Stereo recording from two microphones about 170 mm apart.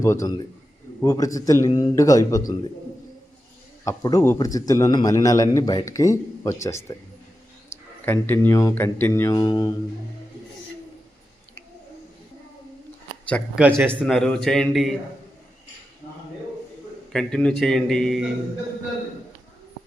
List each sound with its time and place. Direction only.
0.0 s a man's voice: 15° left (ahead or behind)
3.8 s a man's voice: 20° left (ahead or behind)
8.0 s speech: 15° left (ahead or behind)
13.6 s a man's voice: 10° right (ahead or behind)
17.1 s a man's voice: 5° left (ahead or behind)